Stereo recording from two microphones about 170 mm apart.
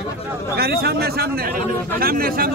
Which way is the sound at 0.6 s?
70° right (ahead or behind).